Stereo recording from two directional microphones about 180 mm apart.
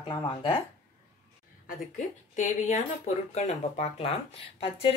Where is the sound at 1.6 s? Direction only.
45° left (ahead or behind).